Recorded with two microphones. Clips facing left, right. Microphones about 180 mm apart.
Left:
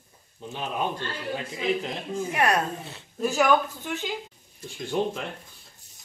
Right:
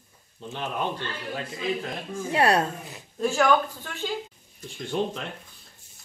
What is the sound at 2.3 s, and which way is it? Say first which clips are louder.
Speech: right 3 dB; 30° right (ahead or behind).